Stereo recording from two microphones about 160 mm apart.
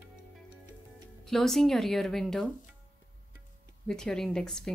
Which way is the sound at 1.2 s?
Centre (ahead or behind).